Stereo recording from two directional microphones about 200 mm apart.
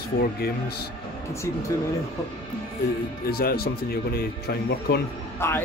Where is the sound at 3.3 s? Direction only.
50° left (ahead or behind).